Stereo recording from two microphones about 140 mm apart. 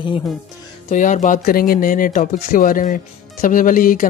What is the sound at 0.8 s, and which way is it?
Speech, 65° left (ahead or behind).